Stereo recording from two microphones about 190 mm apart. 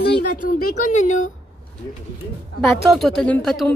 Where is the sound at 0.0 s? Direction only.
50° left (ahead or behind).